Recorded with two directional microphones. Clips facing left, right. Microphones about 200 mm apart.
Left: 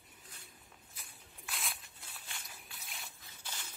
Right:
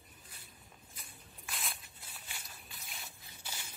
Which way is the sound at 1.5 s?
Centre (ahead or behind).